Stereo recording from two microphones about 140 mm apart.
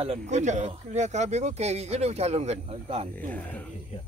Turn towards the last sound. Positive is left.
turn(degrees=10)  # may be behind; listen again after turning